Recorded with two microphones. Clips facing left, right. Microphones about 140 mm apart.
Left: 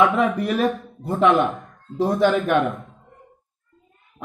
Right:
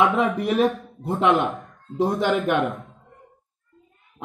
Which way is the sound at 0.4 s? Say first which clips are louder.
Right 1 dB; 20° right (ahead or behind).